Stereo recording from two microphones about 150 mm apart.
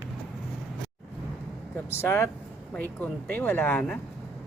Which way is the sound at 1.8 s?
15° left (ahead or behind).